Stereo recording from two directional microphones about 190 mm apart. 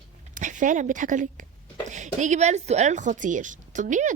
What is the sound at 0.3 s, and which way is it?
Speech, 40° right (ahead or behind).